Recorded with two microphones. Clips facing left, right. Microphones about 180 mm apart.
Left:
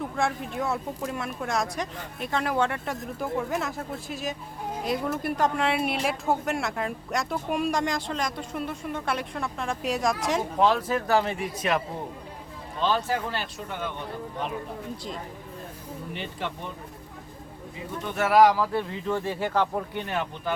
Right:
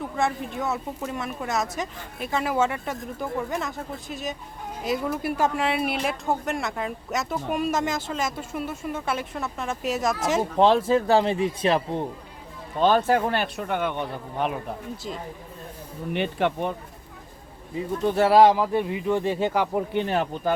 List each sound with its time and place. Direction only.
0.2 s speech: centre (ahead or behind)
10.6 s speech: 25° right (ahead or behind)
12.8 s speech: 55° right (ahead or behind)
16.1 s speech: 65° right (ahead or behind)
18.0 s speech: 35° right (ahead or behind)
20.1 s speech: 35° right (ahead or behind)